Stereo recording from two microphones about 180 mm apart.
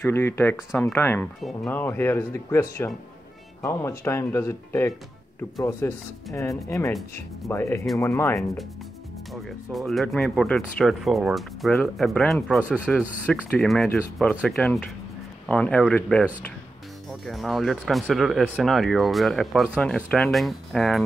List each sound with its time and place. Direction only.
0.0 s speech: 10° left (ahead or behind)
7.4 s speech: 15° left (ahead or behind)
9.3 s speech: centre (ahead or behind)